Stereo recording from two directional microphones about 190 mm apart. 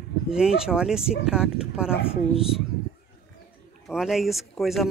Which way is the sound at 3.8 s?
Centre (ahead or behind).